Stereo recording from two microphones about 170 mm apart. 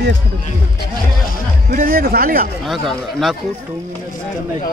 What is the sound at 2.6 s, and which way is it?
Speech, centre (ahead or behind).